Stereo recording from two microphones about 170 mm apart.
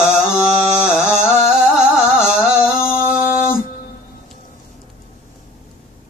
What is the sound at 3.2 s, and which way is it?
Music, 50° left (ahead or behind).